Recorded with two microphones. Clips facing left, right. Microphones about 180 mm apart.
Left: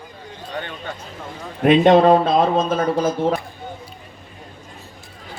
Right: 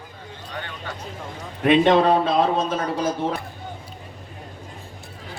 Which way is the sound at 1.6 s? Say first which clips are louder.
Left 4 dB; 45° left (ahead or behind).